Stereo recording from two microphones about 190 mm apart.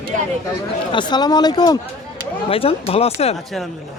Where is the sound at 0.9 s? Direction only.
25° left (ahead or behind).